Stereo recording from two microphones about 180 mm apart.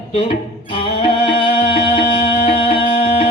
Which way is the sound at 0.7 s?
30° left (ahead or behind).